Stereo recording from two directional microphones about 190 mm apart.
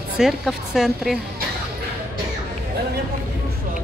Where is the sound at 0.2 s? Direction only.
Centre (ahead or behind).